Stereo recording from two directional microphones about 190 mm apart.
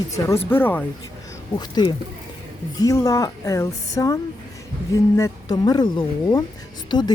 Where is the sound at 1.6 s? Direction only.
20° left (ahead or behind).